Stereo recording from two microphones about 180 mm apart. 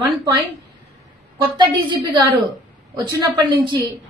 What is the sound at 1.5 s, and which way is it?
Speech, 25° right (ahead or behind).